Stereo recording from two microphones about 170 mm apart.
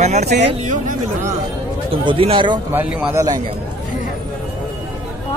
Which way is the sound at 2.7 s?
10° right (ahead or behind).